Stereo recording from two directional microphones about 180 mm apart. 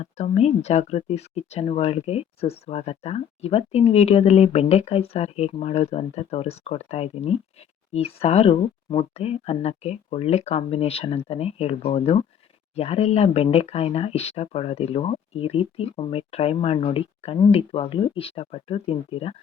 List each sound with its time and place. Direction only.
0.0 s speech: 40° left (ahead or behind)